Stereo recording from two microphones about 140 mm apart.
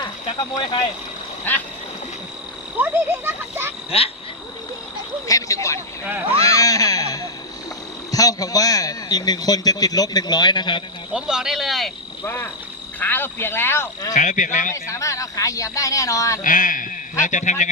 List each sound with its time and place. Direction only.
0.3 s speech: 35° left (ahead or behind)
2.7 s speech: 15° right (ahead or behind)
5.3 s a sound: 25° left (ahead or behind)
8.1 s a man's voice: 25° left (ahead or behind)
11.1 s speech: 5° right (ahead or behind)
12.2 s speech: 15° left (ahead or behind)
14.1 s speech: 60° left (ahead or behind)
14.7 s a man's voice: 20° left (ahead or behind)
16.4 s a man's voice: 70° left (ahead or behind)